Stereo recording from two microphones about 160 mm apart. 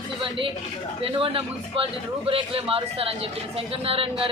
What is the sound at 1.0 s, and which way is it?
A woman's voice, 35° right (ahead or behind).